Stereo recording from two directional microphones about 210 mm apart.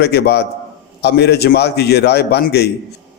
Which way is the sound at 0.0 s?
50° left (ahead or behind).